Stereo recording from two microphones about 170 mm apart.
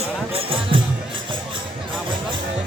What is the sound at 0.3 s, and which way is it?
Music, 30° right (ahead or behind).